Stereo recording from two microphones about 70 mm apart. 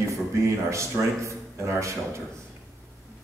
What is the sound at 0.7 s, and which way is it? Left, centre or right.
Speech, right.